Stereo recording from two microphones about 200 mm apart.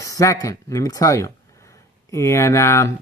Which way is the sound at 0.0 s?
15° left (ahead or behind).